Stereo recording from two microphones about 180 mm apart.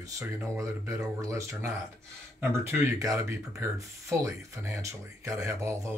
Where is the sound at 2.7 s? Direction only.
15° right (ahead or behind).